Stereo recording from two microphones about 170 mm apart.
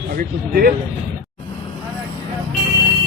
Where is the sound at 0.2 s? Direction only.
60° right (ahead or behind).